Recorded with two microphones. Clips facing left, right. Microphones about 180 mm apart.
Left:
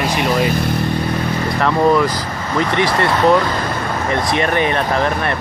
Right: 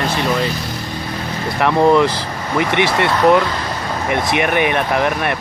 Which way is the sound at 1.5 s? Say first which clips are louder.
Right 2 dB; 15° right (ahead or behind).